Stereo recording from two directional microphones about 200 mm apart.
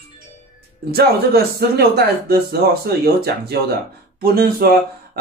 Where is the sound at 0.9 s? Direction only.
50° right (ahead or behind).